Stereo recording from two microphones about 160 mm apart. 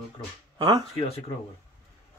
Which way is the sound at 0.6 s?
25° right (ahead or behind).